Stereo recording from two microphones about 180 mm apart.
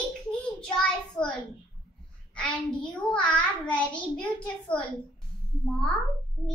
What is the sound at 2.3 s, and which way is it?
A child's voice, 5° left (ahead or behind).